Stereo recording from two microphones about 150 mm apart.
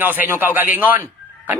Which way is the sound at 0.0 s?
15° right (ahead or behind).